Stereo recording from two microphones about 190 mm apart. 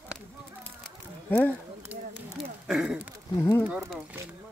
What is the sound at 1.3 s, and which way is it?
Speech, 10° left (ahead or behind).